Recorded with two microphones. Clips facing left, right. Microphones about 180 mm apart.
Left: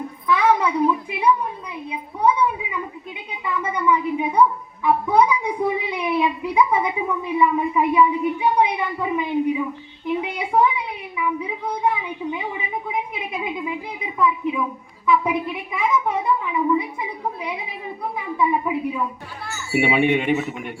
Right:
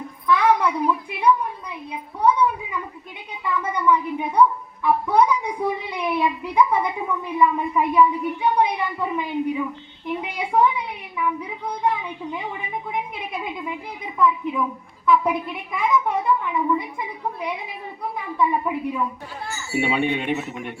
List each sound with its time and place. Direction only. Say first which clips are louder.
0.3 s child singing: even; 5° left (ahead or behind)
1.9 s a sound: even; 10° left (ahead or behind)
19.7 s speech: left 4 dB; 10° left (ahead or behind)